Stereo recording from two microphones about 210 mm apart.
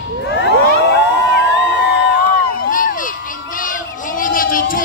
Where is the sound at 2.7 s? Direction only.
40° left (ahead or behind).